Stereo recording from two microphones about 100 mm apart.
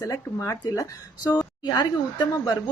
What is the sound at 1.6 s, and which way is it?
Speech, 45° left (ahead or behind).